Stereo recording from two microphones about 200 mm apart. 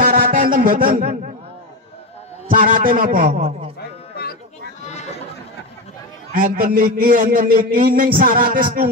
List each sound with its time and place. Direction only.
0.0 s a sound: 45° right (ahead or behind)
2.4 s a man's voice: 45° right (ahead or behind)
6.3 s a man's voice: 45° right (ahead or behind)